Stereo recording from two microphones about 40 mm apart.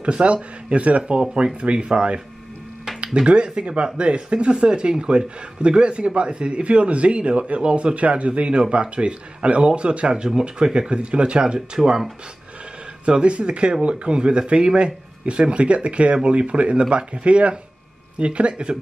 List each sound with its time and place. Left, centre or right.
0.0 s speech: right
3.3 s speech: right
13.0 s speech: right